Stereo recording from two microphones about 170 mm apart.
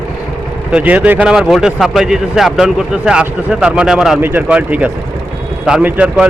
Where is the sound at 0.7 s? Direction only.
10° right (ahead or behind).